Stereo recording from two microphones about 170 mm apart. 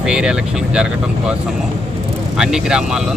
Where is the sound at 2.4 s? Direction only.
5° right (ahead or behind).